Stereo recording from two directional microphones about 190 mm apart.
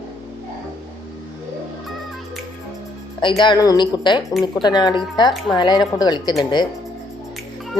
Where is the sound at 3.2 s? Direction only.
25° left (ahead or behind).